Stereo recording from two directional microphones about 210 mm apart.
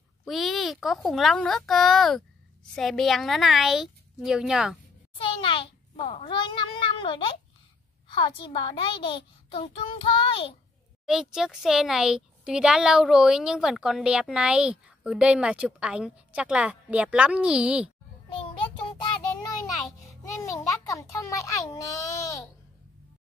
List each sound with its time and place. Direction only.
0.2 s speech: centre (ahead or behind)
5.1 s a child's voice: 25° left (ahead or behind)
11.1 s speech: centre (ahead or behind)
20.4 s a child's voice: 15° left (ahead or behind)